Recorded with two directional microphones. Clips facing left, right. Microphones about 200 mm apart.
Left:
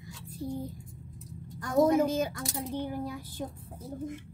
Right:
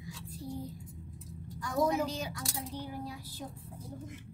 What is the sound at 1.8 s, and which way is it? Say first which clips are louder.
Speech: left 7 dB; 50° left (ahead or behind).